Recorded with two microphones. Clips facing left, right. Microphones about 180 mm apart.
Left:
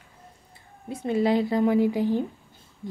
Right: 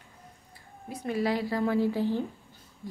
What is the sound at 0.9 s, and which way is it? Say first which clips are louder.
Speech: left 6 dB; 25° left (ahead or behind).